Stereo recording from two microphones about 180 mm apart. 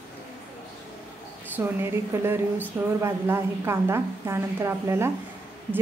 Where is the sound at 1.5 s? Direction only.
15° right (ahead or behind).